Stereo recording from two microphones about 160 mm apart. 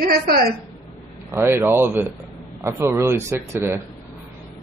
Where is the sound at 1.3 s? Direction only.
15° right (ahead or behind).